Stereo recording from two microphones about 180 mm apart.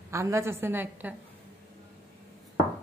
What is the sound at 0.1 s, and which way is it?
A woman's voice, 15° right (ahead or behind).